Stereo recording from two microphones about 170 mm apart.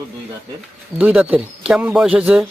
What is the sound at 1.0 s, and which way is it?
Speech, 10° right (ahead or behind).